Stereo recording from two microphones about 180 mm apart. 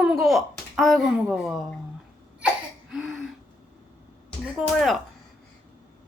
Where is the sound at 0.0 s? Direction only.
5° right (ahead or behind).